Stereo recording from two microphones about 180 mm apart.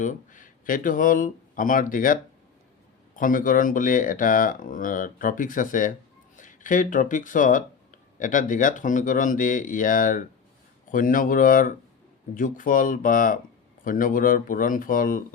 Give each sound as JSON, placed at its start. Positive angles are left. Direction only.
{"t": 0.0, "sound": "speech", "side_deg": 45}
{"t": 3.2, "sound": "speech", "side_deg": 50}